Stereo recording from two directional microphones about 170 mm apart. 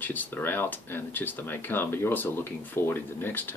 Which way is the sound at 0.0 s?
10° left (ahead or behind).